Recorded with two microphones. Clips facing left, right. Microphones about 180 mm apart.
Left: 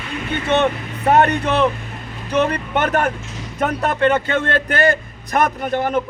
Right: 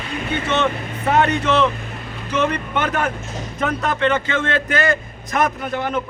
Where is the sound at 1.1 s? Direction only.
55° left (ahead or behind).